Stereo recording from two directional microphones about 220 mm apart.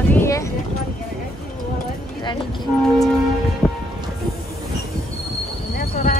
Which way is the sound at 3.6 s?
Centre (ahead or behind).